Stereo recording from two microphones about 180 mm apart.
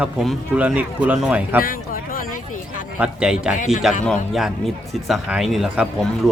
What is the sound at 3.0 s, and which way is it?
Speech, 5° right (ahead or behind).